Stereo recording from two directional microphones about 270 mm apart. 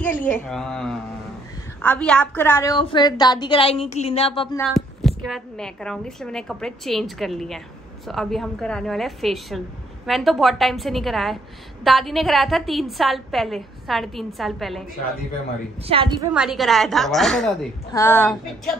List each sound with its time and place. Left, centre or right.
0.2 s a woman's voice: centre
4.6 s a woman's voice: centre
15.9 s a woman's voice: centre
16.3 s a woman's voice: centre